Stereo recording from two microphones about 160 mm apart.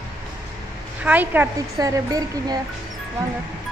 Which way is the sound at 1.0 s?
10° right (ahead or behind).